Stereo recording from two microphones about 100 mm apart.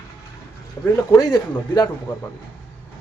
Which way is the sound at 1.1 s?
40° left (ahead or behind).